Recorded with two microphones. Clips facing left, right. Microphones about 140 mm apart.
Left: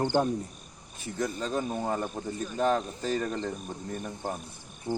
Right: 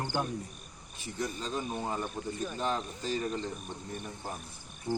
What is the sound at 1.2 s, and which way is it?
Speech, 50° left (ahead or behind).